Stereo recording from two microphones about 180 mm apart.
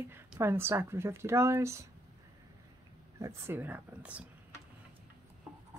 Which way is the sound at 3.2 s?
10° right (ahead or behind).